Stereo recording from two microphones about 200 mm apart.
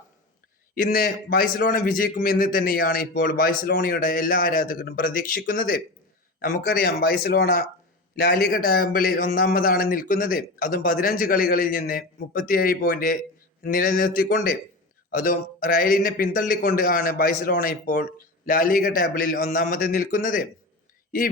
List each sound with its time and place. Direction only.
0.8 s a man's voice: 45° left (ahead or behind)